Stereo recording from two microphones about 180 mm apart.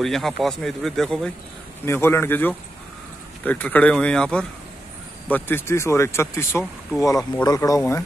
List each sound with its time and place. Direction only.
0.0 s speech: centre (ahead or behind)
1.9 s speech: 15° left (ahead or behind)